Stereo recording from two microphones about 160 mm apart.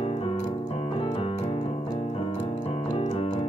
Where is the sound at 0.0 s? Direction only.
35° left (ahead or behind).